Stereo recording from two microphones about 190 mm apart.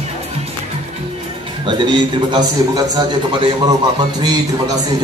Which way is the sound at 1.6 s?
25° right (ahead or behind).